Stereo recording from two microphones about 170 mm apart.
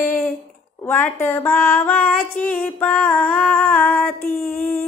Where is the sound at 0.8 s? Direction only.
10° left (ahead or behind).